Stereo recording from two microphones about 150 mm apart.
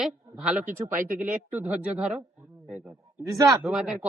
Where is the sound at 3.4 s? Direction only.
25° right (ahead or behind).